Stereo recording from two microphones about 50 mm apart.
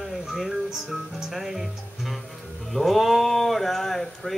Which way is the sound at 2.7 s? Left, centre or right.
Centre.